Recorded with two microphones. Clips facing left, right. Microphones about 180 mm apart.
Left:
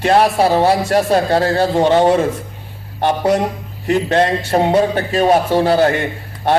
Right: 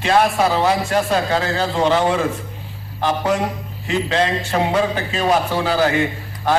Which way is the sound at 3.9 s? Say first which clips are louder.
Left 5 dB; 45° left (ahead or behind).